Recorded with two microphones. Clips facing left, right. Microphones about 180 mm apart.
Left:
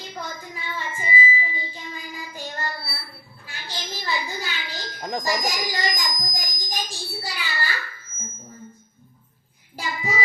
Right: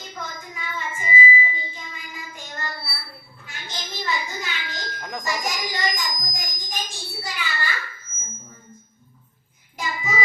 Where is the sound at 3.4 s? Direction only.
35° left (ahead or behind).